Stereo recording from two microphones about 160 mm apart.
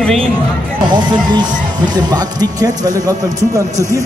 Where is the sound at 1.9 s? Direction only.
25° right (ahead or behind).